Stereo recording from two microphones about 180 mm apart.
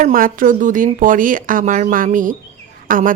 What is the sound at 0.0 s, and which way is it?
Speech, 50° right (ahead or behind).